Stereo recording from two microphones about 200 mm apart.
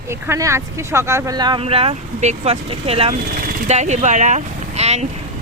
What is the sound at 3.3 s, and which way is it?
Speech, 45° right (ahead or behind).